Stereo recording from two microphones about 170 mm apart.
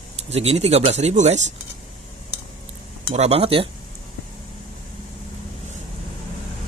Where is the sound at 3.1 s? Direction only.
40° right (ahead or behind).